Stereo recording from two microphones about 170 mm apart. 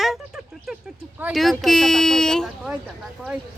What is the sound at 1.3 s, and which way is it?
Speech, centre (ahead or behind).